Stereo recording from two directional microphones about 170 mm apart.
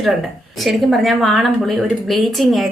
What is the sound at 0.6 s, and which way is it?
A woman's voice, centre (ahead or behind).